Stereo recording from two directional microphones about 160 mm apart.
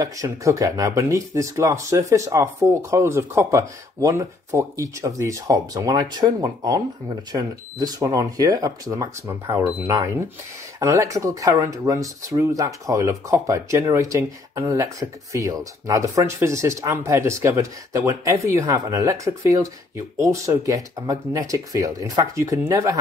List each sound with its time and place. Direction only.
0.0 s speech: 20° right (ahead or behind)